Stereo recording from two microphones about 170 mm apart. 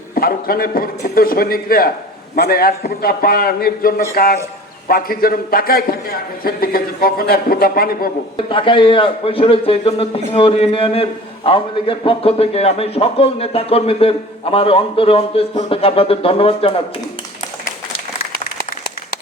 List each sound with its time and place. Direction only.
0.1 s a man's voice: 60° left (ahead or behind)
8.4 s a man's voice: 30° left (ahead or behind)